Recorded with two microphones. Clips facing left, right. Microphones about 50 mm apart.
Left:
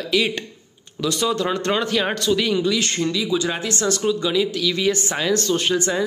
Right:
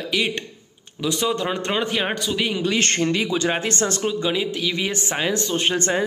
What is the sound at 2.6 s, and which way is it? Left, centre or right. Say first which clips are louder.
Speech: even; right.